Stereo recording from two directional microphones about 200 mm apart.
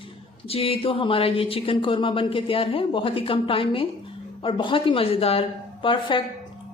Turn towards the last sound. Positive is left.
turn(degrees=25)  # may be behind; listen again after turning